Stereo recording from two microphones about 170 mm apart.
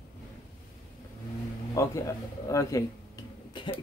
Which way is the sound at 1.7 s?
15° left (ahead or behind).